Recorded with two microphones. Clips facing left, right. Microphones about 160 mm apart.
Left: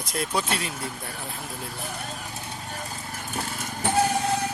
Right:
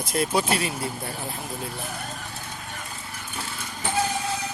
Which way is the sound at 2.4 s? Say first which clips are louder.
Left 2 dB; 30° left (ahead or behind).